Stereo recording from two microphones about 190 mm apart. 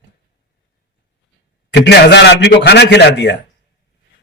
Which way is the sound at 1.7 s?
60° left (ahead or behind).